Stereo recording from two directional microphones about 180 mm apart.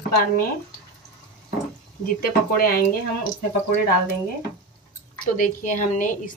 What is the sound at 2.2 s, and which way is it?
Speech, 55° left (ahead or behind).